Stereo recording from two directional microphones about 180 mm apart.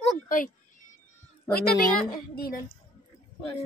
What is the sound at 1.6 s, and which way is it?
Speech, 55° left (ahead or behind).